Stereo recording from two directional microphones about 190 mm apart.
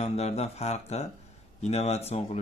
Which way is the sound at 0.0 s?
35° left (ahead or behind).